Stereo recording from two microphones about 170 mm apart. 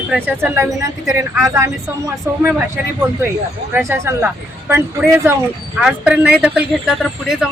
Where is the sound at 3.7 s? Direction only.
10° right (ahead or behind).